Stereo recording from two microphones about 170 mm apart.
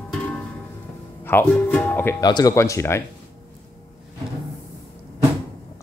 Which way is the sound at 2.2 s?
25° left (ahead or behind).